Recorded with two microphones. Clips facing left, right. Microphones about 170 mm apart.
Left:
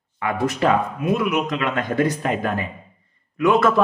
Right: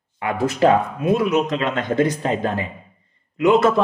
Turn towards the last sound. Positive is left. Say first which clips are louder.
# right 2 dB
turn(degrees=-20)  # may be behind; listen again after turning